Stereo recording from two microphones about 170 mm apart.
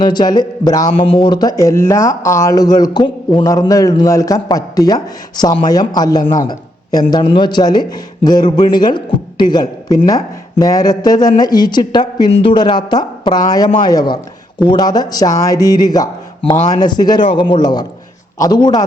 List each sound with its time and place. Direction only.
0.0 s a man's voice: 25° left (ahead or behind)